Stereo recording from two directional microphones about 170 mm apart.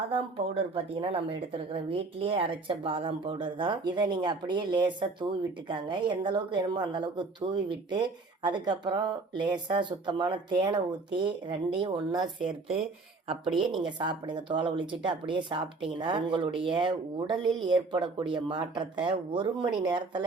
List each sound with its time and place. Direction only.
0.1 s a woman's voice: 35° right (ahead or behind)
13.6 s a woman's voice: 30° right (ahead or behind)